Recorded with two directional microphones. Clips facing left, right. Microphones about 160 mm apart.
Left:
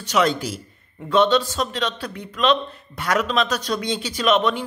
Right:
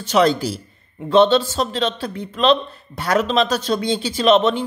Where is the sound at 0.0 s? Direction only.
30° right (ahead or behind).